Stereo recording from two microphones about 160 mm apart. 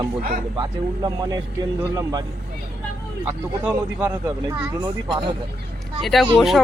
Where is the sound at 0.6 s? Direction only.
25° right (ahead or behind).